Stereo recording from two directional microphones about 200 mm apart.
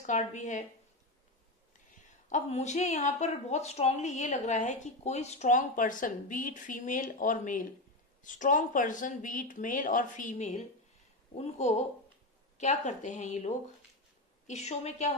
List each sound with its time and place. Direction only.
0.0 s speech: 35° left (ahead or behind)
2.2 s speech: 35° left (ahead or behind)
14.5 s speech: 35° left (ahead or behind)